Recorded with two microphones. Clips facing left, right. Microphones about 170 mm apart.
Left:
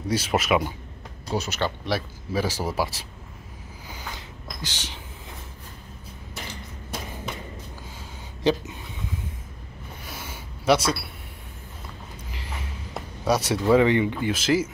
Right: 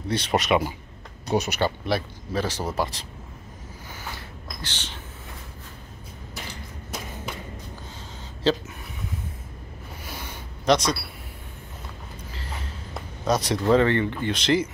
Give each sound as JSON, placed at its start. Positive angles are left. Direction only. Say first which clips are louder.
{"t": 0.1, "sound": "speech", "louder": "even", "side_deg": 5}
{"t": 1.2, "sound": "speech", "louder": "right 3 dB", "side_deg": -20}
{"t": 1.9, "sound": "speech", "louder": "right 1 dB", "side_deg": 5}
{"t": 4.6, "sound": "speech", "louder": "left 1 dB", "side_deg": 10}
{"t": 8.5, "sound": "speech", "louder": "even", "side_deg": 15}
{"t": 10.0, "sound": "a sound", "louder": "right 1 dB", "side_deg": 5}
{"t": 12.3, "sound": "a sound", "louder": "even", "side_deg": 15}